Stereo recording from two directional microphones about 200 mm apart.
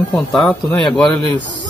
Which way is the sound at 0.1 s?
Centre (ahead or behind).